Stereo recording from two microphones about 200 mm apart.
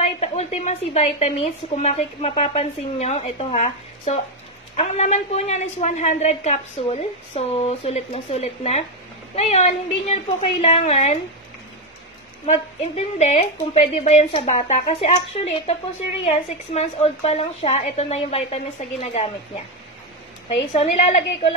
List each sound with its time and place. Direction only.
0.0 s a woman's voice: 30° left (ahead or behind)
12.4 s a woman's voice: 30° left (ahead or behind)
20.7 s a woman's voice: 30° left (ahead or behind)